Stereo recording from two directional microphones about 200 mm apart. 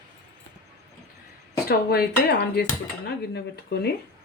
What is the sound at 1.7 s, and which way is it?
Speech, 50° left (ahead or behind).